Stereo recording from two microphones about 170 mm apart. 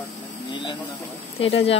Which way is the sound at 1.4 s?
35° left (ahead or behind).